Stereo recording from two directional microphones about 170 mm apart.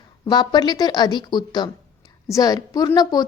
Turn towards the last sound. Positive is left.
turn(degrees=25)  # may be behind; listen again after turning